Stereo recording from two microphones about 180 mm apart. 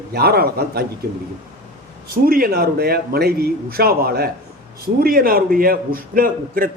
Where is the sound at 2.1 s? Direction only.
55° right (ahead or behind).